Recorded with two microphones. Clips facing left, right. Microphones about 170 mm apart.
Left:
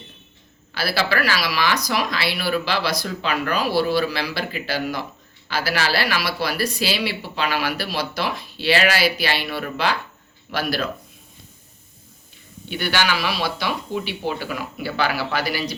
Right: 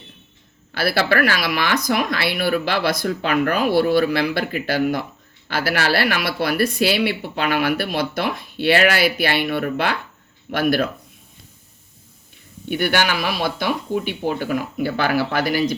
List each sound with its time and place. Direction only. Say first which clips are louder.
0.7 s speech: right 4 dB; 55° right (ahead or behind)
12.6 s speech: right 3 dB; 55° right (ahead or behind)